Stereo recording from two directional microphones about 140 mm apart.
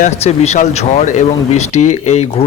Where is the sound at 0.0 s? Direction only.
55° left (ahead or behind).